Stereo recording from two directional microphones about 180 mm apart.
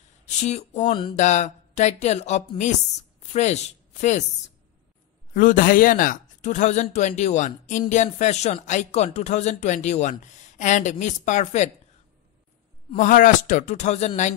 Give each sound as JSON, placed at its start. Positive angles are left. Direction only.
{"t": 0.4, "sound": "a woman's voice", "side_deg": 40}
{"t": 5.3, "sound": "speech", "side_deg": 50}
{"t": 12.9, "sound": "speech", "side_deg": 45}